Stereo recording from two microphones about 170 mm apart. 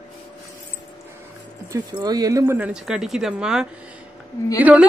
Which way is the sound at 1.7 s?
20° right (ahead or behind).